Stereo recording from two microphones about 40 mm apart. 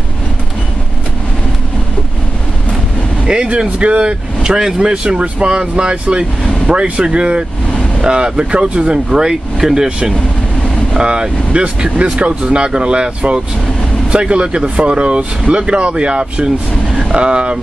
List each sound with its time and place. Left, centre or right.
3.3 s speech: right
4.4 s speech: centre
11.0 s speech: right